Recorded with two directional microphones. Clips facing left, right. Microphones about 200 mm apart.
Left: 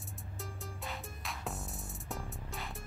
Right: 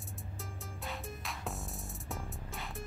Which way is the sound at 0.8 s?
Centre (ahead or behind).